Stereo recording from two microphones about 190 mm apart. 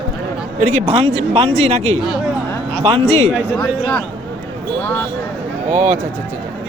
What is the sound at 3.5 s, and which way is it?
Speech, 5° left (ahead or behind).